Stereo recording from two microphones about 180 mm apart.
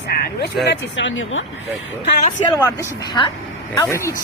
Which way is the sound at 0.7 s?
90° left.